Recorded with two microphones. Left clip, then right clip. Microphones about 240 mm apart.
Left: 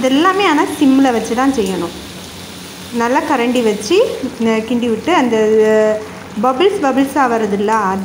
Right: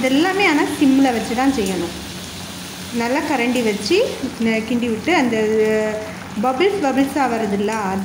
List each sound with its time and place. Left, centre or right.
0.3 s speech: centre
3.0 s speech: centre